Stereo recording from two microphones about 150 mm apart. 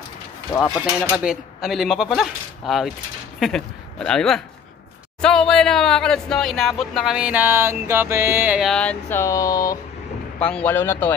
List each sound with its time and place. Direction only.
1.1 s speech: 5° right (ahead or behind)
8.5 s speech: 5° left (ahead or behind)
9.2 s speech: 20° left (ahead or behind)
10.4 s speech: 10° left (ahead or behind)